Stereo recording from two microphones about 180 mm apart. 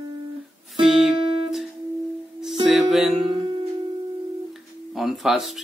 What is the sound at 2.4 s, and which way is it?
Music, centre (ahead or behind).